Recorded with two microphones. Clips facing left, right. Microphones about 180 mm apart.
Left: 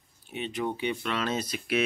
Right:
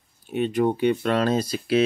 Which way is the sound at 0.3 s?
45° right (ahead or behind).